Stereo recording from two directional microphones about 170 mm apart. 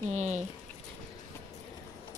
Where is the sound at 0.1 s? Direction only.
45° right (ahead or behind).